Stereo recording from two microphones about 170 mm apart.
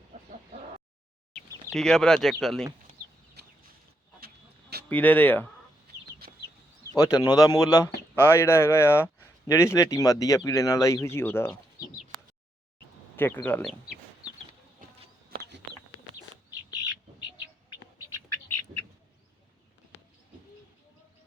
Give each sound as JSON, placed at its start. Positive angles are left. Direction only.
{"t": 1.7, "sound": "speech", "side_deg": 5}
{"t": 3.4, "sound": "a sound", "side_deg": -75}
{"t": 4.9, "sound": "speech", "side_deg": 10}
{"t": 6.9, "sound": "speech", "side_deg": 20}
{"t": 13.1, "sound": "speech", "side_deg": 10}
{"t": 15.3, "sound": "bird", "side_deg": -85}